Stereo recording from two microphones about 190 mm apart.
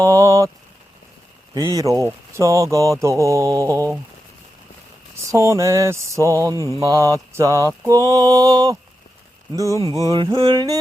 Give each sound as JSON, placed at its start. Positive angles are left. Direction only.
{"t": 0.0, "sound": "a sound", "side_deg": -15}
{"t": 1.5, "sound": "speech", "side_deg": -15}
{"t": 5.3, "sound": "speech", "side_deg": -15}
{"t": 7.9, "sound": "mantra", "side_deg": -15}
{"t": 10.0, "sound": "mantra", "side_deg": -20}